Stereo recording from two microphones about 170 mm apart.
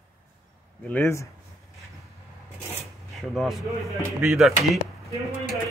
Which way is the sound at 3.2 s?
Centre (ahead or behind).